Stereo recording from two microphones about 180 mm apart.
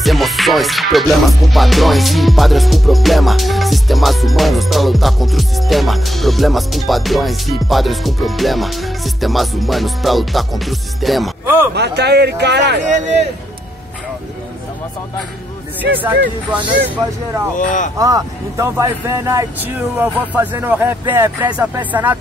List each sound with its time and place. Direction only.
0.0 s music: centre (ahead or behind)
11.4 s speech: 15° right (ahead or behind)
11.7 s speech: 70° right (ahead or behind)
15.8 s speech: 10° right (ahead or behind)
17.6 s speech: 45° left (ahead or behind)
17.9 s speech: 20° right (ahead or behind)